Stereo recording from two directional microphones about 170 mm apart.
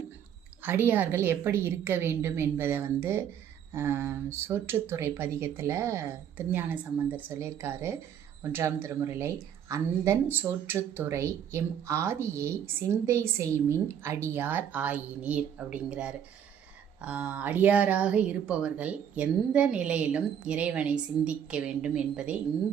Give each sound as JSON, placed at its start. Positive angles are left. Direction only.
{"t": 0.6, "sound": "speech", "side_deg": -10}